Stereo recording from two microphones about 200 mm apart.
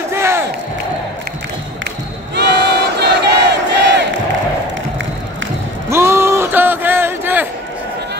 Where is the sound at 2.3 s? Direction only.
55° right (ahead or behind).